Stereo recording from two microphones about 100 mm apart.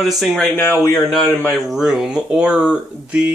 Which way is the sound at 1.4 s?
Centre (ahead or behind).